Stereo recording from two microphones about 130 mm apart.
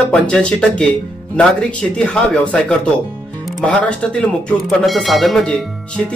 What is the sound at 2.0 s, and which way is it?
Speech, 5° left (ahead or behind).